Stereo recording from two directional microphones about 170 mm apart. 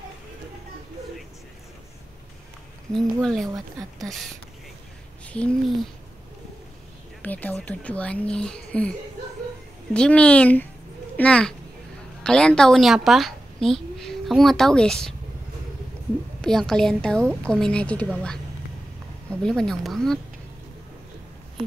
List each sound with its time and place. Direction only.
2.9 s a woman's voice: centre (ahead or behind)
3.4 s speech: 20° right (ahead or behind)
5.2 s speech: 5° left (ahead or behind)
7.2 s speech: 10° left (ahead or behind)
9.9 s a woman's voice: 5° left (ahead or behind)
16.3 s a woman's voice: 5° left (ahead or behind)
19.4 s a woman's voice: 5° left (ahead or behind)